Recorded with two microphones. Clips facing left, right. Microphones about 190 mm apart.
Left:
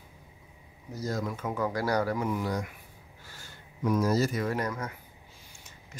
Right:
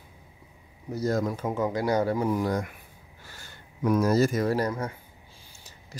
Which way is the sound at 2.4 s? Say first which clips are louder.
Right 4 dB; 50° right (ahead or behind).